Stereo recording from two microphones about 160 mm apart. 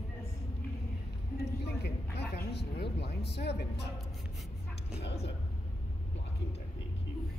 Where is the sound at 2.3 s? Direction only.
90° left.